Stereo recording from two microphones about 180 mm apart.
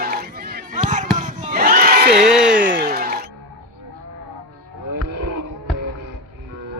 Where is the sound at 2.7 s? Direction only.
60° right (ahead or behind).